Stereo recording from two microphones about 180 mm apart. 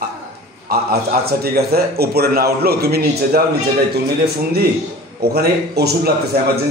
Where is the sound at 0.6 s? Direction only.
60° right (ahead or behind).